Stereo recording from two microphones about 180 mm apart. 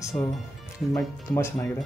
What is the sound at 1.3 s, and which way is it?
Speech, 15° left (ahead or behind).